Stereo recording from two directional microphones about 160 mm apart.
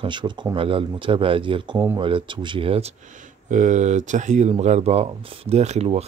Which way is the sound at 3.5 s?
50° right (ahead or behind).